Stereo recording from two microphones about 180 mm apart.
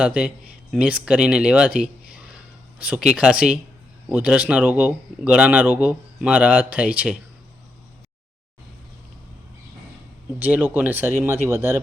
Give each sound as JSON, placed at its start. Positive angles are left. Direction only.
{"t": 0.0, "sound": "speech", "side_deg": -5}
{"t": 10.4, "sound": "speech", "side_deg": -10}